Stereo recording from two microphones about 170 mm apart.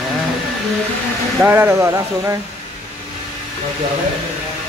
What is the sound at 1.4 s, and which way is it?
Speech, 15° right (ahead or behind).